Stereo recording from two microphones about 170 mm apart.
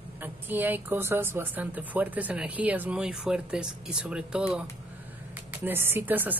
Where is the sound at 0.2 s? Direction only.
10° right (ahead or behind).